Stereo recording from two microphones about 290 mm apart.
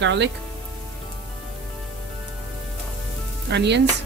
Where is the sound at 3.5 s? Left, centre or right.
Right.